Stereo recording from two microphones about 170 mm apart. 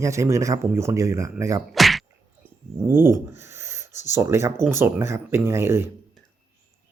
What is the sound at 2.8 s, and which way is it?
Speech, 15° right (ahead or behind).